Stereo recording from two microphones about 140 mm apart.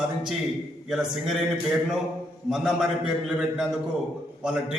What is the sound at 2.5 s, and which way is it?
A man's voice, 5° right (ahead or behind).